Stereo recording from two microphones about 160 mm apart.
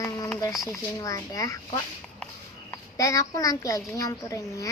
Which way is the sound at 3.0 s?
20° left (ahead or behind).